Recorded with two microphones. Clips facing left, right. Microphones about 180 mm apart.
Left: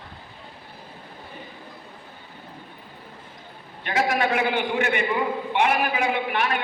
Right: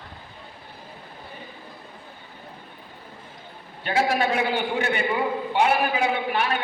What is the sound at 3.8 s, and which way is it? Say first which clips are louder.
A man's voice: right 1 dB; 30° right (ahead or behind).